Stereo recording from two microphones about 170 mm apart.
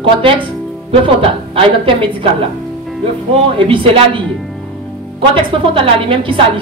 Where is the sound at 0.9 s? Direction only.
30° right (ahead or behind).